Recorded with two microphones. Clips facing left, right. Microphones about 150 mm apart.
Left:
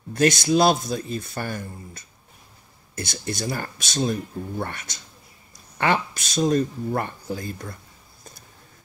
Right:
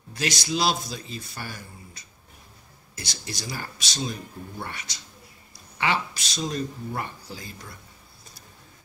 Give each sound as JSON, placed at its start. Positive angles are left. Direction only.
{"t": 0.1, "sound": "speech", "side_deg": 50}